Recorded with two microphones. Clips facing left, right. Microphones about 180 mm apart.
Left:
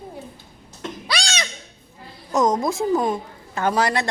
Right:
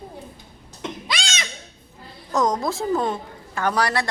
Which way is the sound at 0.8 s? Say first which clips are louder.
Left 1 dB; 20° right (ahead or behind).